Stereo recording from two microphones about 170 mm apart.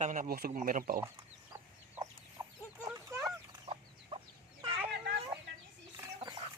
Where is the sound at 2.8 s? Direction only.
15° right (ahead or behind).